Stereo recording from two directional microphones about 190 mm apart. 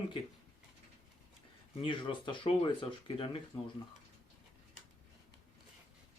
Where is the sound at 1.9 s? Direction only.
25° left (ahead or behind).